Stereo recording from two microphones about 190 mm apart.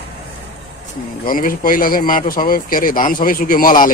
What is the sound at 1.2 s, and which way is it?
Speech, 50° left (ahead or behind).